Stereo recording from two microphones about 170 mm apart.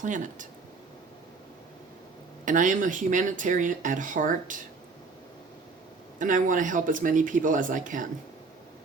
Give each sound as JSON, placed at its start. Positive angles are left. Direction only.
{"t": 0.0, "sound": "speech", "side_deg": -50}
{"t": 2.4, "sound": "speech", "side_deg": -50}
{"t": 6.1, "sound": "speech", "side_deg": -50}